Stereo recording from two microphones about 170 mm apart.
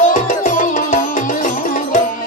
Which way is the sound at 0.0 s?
50° left (ahead or behind).